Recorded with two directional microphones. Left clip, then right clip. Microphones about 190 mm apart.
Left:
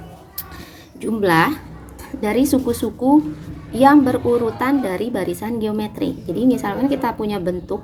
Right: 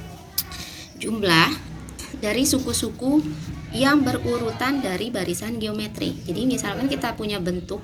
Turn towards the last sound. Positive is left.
turn(degrees=45)  # may be behind; listen again after turning